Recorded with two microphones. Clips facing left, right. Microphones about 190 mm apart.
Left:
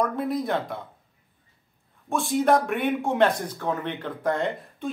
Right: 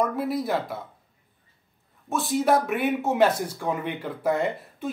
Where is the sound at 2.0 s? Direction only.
Centre (ahead or behind).